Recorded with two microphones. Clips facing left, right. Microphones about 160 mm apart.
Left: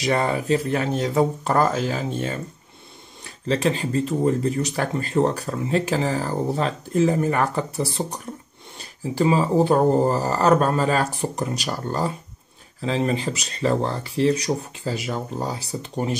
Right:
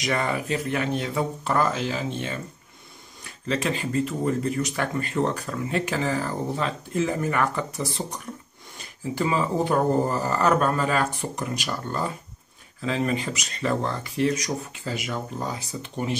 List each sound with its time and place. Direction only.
0.0 s speech: 35° left (ahead or behind)
3.4 s speech: 35° left (ahead or behind)